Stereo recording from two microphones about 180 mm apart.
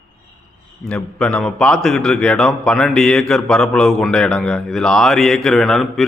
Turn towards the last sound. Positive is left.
turn(degrees=0)  # may be behind; listen again after turning